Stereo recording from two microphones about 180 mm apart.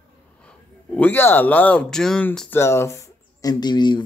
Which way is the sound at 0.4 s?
5° left (ahead or behind).